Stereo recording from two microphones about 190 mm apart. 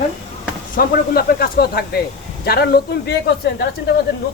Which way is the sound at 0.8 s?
50° left (ahead or behind).